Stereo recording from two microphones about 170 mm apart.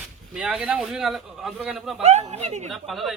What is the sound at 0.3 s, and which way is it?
Speech, 5° right (ahead or behind).